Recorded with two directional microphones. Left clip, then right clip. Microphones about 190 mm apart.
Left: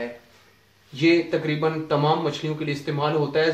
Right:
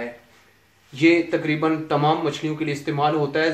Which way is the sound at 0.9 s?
30° right (ahead or behind).